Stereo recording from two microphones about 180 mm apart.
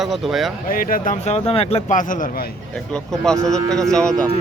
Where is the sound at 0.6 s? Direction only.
50° left (ahead or behind).